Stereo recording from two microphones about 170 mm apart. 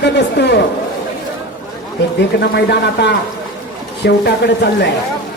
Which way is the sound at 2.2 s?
80° left.